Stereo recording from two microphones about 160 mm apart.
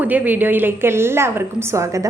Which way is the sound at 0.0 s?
10° right (ahead or behind).